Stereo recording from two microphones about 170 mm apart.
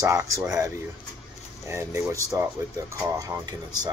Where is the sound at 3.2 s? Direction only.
20° right (ahead or behind).